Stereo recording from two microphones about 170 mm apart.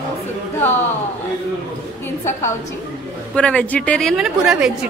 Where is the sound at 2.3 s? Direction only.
15° left (ahead or behind); by 4.9 s 5° right (ahead or behind).